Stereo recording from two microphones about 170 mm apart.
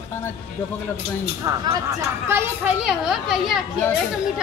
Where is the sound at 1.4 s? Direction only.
20° right (ahead or behind).